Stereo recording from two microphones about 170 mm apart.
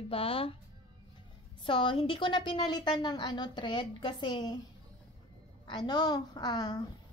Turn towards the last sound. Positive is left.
turn(degrees=25)  # may be behind; listen again after turning